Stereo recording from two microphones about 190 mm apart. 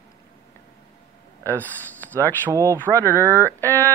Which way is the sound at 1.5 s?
10° left (ahead or behind).